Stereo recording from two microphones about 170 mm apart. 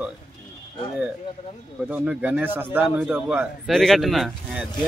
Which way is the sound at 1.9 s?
10° right (ahead or behind).